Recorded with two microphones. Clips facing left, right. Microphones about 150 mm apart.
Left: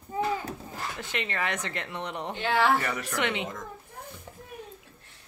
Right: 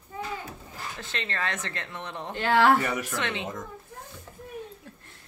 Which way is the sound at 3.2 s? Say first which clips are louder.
Left 2 dB; 15° left (ahead or behind).